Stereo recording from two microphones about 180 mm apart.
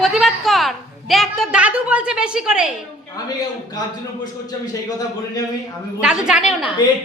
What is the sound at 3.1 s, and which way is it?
Speech, 20° left (ahead or behind).